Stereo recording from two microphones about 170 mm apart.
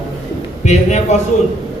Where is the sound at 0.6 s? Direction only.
40° left (ahead or behind).